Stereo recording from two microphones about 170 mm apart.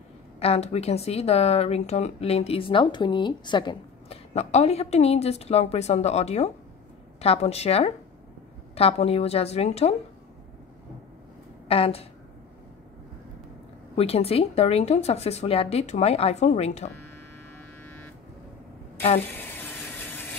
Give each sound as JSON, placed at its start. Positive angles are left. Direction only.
{"t": 0.4, "sound": "speech", "side_deg": 40}
{"t": 11.6, "sound": "a woman's voice", "side_deg": 35}
{"t": 13.9, "sound": "speech", "side_deg": 35}
{"t": 19.2, "sound": "sizzle", "side_deg": 10}